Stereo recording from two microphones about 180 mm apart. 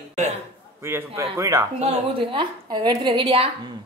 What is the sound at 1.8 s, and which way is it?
A woman's voice, 30° right (ahead or behind).